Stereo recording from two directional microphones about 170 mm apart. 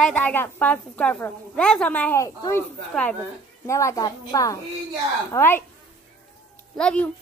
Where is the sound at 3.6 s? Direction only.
15° left (ahead or behind).